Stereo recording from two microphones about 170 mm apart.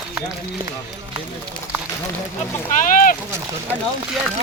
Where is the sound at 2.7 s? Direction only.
55° left (ahead or behind).